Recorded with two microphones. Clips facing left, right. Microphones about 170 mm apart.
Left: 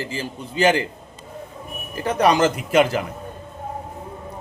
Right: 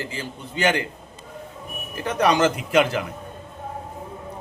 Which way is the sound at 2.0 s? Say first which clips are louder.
Left 2 dB; 35° left (ahead or behind).